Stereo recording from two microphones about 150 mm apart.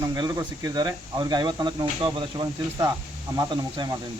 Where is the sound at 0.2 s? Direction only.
25° right (ahead or behind).